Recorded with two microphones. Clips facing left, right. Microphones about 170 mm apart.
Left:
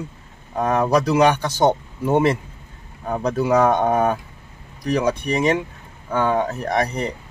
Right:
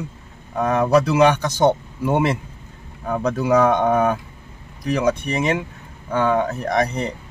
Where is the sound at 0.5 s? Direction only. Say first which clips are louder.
Right 1 dB; 35° left (ahead or behind).